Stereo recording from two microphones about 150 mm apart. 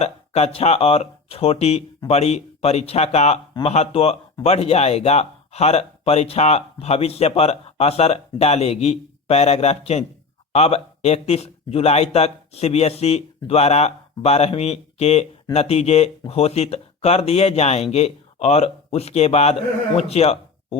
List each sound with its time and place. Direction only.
0.0 s speech: 45° left (ahead or behind)